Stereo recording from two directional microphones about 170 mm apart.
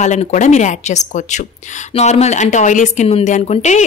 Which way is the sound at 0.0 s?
45° left (ahead or behind).